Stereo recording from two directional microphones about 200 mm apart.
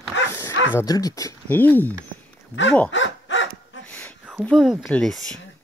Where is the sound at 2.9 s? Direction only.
70° left (ahead or behind).